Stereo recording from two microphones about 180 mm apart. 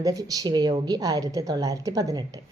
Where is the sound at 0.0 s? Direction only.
20° right (ahead or behind).